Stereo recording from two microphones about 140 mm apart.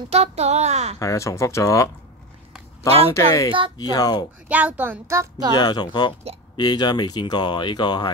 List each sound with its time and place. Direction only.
0.1 s a woman's voice: 50° right (ahead or behind)
0.9 s speech: 20° left (ahead or behind)
3.1 s speech: 25° left (ahead or behind)
4.5 s speech: 10° right (ahead or behind)
5.5 s speech: 30° left (ahead or behind)